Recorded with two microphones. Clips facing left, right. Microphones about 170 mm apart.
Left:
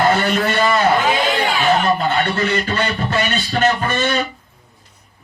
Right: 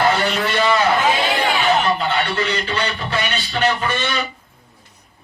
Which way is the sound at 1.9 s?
50° left (ahead or behind).